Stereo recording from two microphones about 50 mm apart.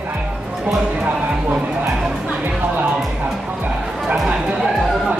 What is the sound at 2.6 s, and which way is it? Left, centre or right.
Music, right.